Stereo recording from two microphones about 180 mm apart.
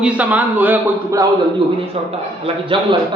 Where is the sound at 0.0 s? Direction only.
10° right (ahead or behind).